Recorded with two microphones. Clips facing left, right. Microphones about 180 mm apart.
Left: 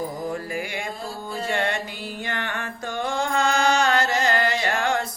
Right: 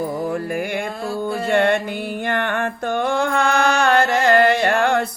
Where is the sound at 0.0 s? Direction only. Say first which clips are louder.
Right 6 dB; 60° right (ahead or behind).